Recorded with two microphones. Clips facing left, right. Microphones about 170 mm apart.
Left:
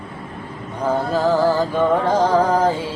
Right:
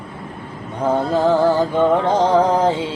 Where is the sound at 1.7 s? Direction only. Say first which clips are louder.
Right 1 dB; 20° right (ahead or behind).